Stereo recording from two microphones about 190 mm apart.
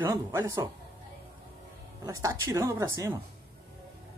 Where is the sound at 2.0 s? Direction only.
20° right (ahead or behind).